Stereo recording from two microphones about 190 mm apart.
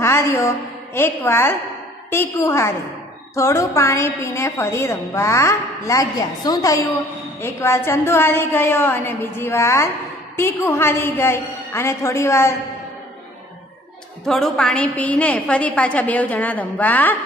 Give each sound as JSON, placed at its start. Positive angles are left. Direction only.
{"t": 0.0, "sound": "music", "side_deg": 15}
{"t": 0.9, "sound": "a woman's voice", "side_deg": 10}
{"t": 14.2, "sound": "a woman's voice", "side_deg": 0}